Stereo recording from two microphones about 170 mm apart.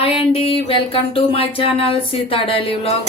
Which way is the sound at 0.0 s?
35° left (ahead or behind).